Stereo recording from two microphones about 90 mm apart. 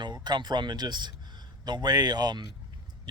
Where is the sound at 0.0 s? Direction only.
55° right (ahead or behind).